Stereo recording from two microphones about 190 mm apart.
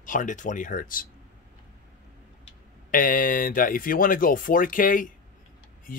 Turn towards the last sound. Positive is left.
turn(degrees=45)  # may be behind; listen again after turning